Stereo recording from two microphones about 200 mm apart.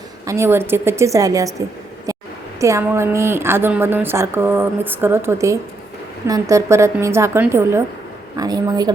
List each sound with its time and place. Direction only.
0.3 s a woman's voice: 10° right (ahead or behind)
2.6 s a woman's voice: 15° right (ahead or behind)